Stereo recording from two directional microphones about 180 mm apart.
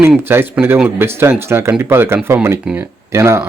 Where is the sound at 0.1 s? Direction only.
10° right (ahead or behind).